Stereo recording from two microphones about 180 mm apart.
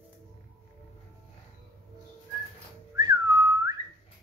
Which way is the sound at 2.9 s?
20° right (ahead or behind).